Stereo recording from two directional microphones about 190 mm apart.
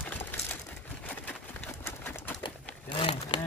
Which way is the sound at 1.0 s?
10° left (ahead or behind).